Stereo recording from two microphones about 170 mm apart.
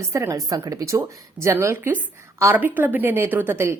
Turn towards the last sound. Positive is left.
turn(degrees=-15)  # may be behind; listen again after turning